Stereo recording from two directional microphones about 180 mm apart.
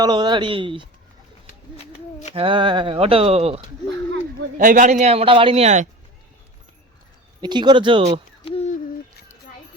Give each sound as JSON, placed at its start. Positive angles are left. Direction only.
{"t": 0.0, "sound": "speech", "side_deg": -25}
{"t": 1.7, "sound": "a sound", "side_deg": 40}
{"t": 2.3, "sound": "a man's voice", "side_deg": -30}
{"t": 4.5, "sound": "a man's voice", "side_deg": -45}
{"t": 7.4, "sound": "speech", "side_deg": -25}
{"t": 8.4, "sound": "owl", "side_deg": 35}